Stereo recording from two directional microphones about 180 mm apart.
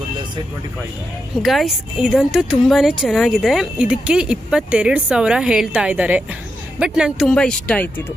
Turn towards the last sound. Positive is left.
turn(degrees=5)  # may be behind; listen again after turning